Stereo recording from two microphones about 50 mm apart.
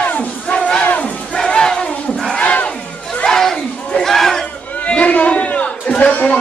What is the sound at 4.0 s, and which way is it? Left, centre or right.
Crowd, centre.